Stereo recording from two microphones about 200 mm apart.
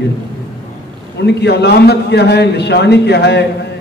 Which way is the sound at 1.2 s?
55° left (ahead or behind).